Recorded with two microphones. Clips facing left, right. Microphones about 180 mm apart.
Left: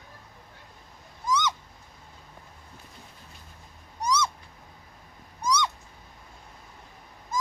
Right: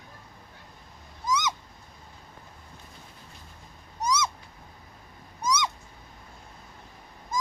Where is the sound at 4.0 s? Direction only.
10° right (ahead or behind).